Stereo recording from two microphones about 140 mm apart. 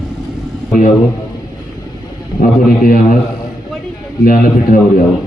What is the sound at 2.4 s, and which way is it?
Speech, 75° left (ahead or behind).